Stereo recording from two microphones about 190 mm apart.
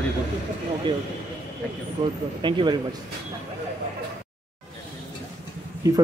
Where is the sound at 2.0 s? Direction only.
35° right (ahead or behind).